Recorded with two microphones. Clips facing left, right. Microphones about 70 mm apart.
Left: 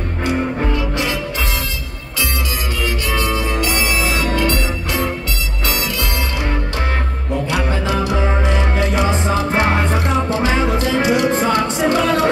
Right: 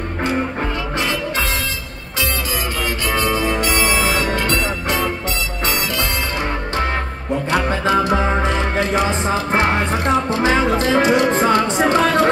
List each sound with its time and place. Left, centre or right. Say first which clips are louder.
3.2 s music: right 2 dB; right
7.4 s music: right 4 dB; right